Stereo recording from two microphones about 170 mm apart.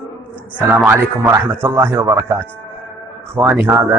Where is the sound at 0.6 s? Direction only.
10° right (ahead or behind).